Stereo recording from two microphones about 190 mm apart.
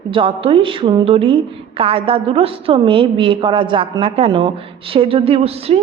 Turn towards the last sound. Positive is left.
turn(degrees=-30)  # may be behind; listen again after turning